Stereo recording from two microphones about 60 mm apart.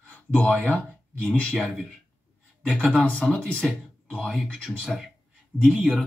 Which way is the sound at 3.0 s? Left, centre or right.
Left.